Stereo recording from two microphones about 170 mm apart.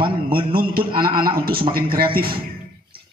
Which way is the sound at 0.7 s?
60° right (ahead or behind).